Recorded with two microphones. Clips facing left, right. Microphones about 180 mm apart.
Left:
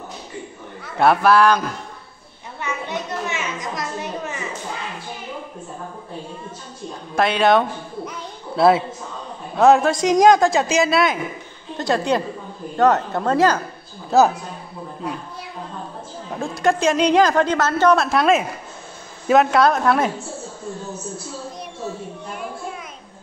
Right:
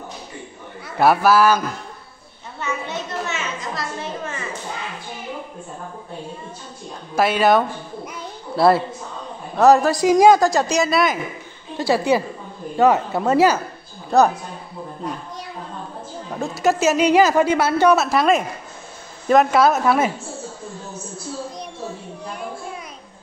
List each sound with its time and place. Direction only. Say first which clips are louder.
0.9 s a woman's voice: even; 5° right (ahead or behind)
2.6 s a sound: even; 15° left (ahead or behind)
7.2 s a woman's voice: even; 5° right (ahead or behind)
16.3 s a woman's voice: even; 5° right (ahead or behind)